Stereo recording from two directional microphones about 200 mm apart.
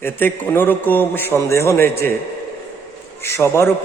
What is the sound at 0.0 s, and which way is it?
A man's voice, 10° left (ahead or behind).